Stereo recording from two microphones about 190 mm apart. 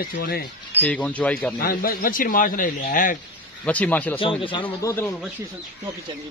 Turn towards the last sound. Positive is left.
turn(degrees=15)  # may be behind; listen again after turning